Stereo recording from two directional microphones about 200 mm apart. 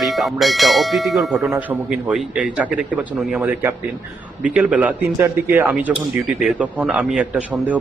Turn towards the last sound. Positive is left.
turn(degrees=-5)  # may be behind; listen again after turning